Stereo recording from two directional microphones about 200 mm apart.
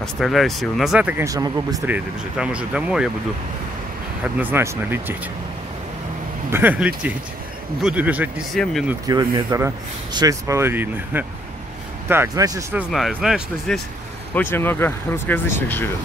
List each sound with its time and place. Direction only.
0.0 s speech: centre (ahead or behind); by 2.0 s 15° right (ahead or behind)
2.0 s speech: 5° right (ahead or behind)
4.2 s speech: 10° right (ahead or behind)
6.5 s speech: 10° right (ahead or behind)
9.0 s speech: 15° right (ahead or behind)
12.9 s speech: centre (ahead or behind)
14.3 s speech: 10° left (ahead or behind)